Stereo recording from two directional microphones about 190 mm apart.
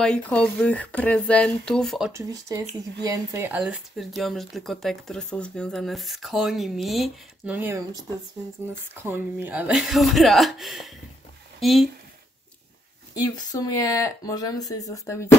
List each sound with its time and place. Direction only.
0.0 s speech: 5° left (ahead or behind)
2.1 s speech: 15° right (ahead or behind)
9.0 s speech: 10° right (ahead or behind)
13.1 s speech: 20° left (ahead or behind)